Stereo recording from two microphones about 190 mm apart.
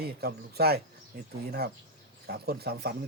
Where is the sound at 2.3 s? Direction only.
55° right (ahead or behind).